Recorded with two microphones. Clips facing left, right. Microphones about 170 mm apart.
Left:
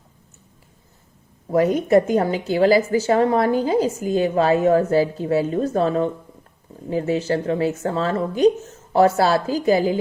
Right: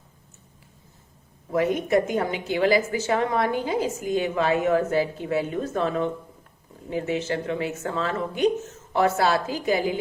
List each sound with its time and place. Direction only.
1.5 s a woman's voice: 40° left (ahead or behind)